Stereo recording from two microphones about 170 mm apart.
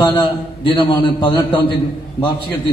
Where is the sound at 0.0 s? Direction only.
30° left (ahead or behind).